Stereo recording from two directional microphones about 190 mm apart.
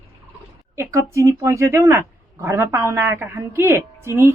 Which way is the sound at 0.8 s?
15° right (ahead or behind).